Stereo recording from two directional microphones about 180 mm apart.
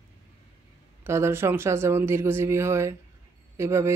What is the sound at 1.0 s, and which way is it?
Speech, 15° right (ahead or behind).